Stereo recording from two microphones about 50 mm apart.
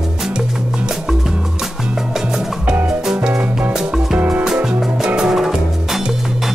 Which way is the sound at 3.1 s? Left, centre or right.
Centre.